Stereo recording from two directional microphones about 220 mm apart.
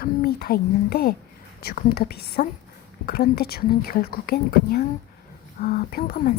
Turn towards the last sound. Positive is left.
turn(degrees=40)  # may be behind; listen again after turning